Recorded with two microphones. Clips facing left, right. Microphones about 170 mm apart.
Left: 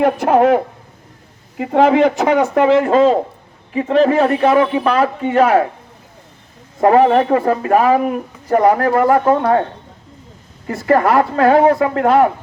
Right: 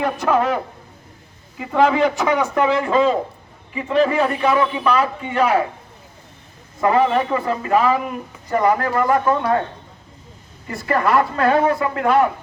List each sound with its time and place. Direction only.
0.0 s speech: 50° left (ahead or behind)
4.3 s speech: 55° left (ahead or behind)
6.7 s speech: 50° left (ahead or behind)
10.8 s speech: 50° left (ahead or behind)